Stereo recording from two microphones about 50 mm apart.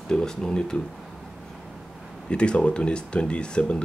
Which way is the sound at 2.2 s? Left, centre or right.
Left.